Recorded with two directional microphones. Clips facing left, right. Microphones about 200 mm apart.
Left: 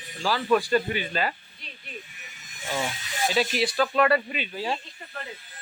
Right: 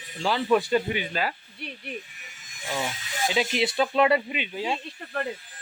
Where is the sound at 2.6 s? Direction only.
Centre (ahead or behind).